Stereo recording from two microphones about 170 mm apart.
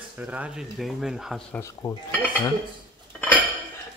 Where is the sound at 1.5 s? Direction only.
15° left (ahead or behind).